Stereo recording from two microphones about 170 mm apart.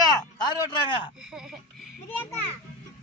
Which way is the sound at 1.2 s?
5° right (ahead or behind).